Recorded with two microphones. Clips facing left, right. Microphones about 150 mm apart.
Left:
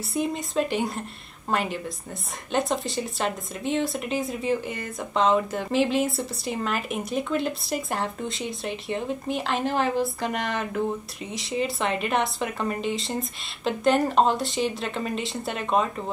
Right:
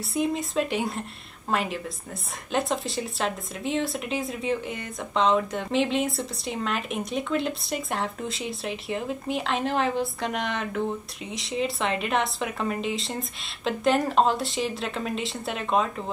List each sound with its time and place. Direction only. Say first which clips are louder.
0.1 s speech: right 1 dB; centre (ahead or behind)